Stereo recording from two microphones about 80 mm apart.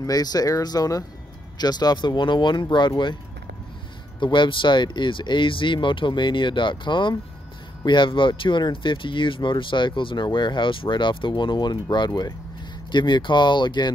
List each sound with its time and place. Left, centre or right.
0.0 s speech: left
4.2 s speech: left
12.1 s speech: left
12.9 s speech: left